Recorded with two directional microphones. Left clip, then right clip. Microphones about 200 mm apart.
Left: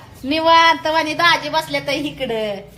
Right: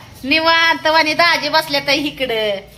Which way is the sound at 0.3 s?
15° right (ahead or behind).